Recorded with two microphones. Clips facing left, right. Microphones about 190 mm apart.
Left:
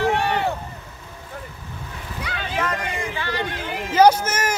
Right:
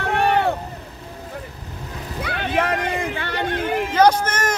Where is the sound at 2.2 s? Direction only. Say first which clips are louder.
Right 4 dB; 60° right (ahead or behind).